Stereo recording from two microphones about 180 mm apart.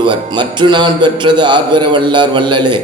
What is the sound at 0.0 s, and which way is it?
A man's voice, 25° right (ahead or behind).